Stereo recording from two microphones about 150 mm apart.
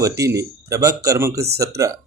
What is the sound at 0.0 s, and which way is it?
Speech, 20° right (ahead or behind).